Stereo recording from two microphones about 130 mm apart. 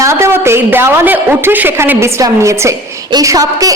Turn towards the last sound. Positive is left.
turn(degrees=-25)  # may be behind; listen again after turning